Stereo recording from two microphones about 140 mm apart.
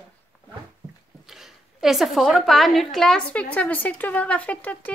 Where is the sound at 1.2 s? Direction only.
Centre (ahead or behind).